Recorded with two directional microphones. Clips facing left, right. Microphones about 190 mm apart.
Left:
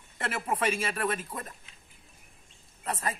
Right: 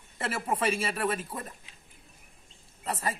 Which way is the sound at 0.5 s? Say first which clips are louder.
Even; 30° right (ahead or behind).